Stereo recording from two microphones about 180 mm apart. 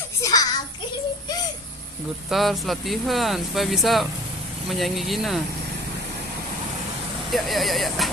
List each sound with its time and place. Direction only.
0.2 s a sound: 20° left (ahead or behind)
2.2 s speech: centre (ahead or behind)
7.2 s speech: centre (ahead or behind)